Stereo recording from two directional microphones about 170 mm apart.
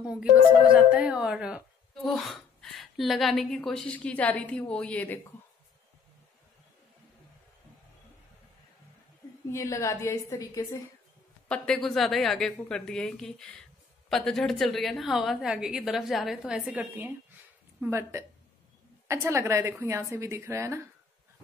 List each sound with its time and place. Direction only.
0.0 s a woman's voice: 5° right (ahead or behind); by 5.2 s 10° left (ahead or behind)
9.5 s a woman's voice: 15° left (ahead or behind)
11.4 s a woman's voice: 5° left (ahead or behind); by 20.8 s 15° right (ahead or behind)